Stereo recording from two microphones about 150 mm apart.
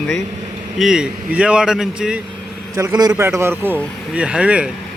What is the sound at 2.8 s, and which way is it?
A man's voice, 25° right (ahead or behind).